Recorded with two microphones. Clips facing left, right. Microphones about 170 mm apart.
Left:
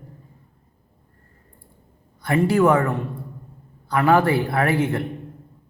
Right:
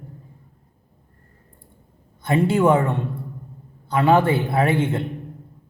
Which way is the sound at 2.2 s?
25° right (ahead or behind).